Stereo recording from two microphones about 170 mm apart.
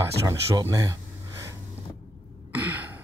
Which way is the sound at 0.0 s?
15° right (ahead or behind).